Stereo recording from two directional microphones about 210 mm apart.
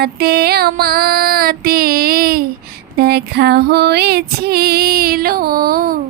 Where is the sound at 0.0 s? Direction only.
50° right (ahead or behind).